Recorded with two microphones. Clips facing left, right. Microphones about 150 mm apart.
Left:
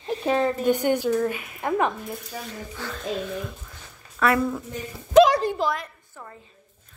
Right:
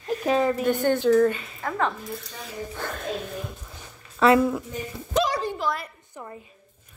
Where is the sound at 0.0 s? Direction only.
25° left (ahead or behind).